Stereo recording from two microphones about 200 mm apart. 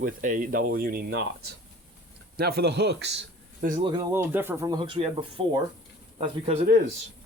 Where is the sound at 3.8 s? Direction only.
20° right (ahead or behind).